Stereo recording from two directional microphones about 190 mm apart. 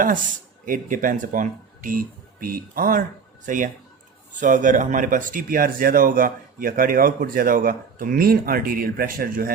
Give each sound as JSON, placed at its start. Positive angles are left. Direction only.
{"t": 0.0, "sound": "speech", "side_deg": -45}